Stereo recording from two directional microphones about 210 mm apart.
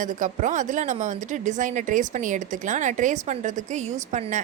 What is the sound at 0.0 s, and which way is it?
A woman's voice, 35° right (ahead or behind).